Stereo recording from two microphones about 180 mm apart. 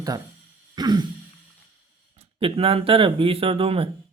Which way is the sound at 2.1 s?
30° right (ahead or behind).